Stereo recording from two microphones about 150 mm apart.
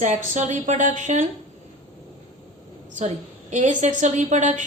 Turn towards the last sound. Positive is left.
turn(degrees=-55)  # may be behind; listen again after turning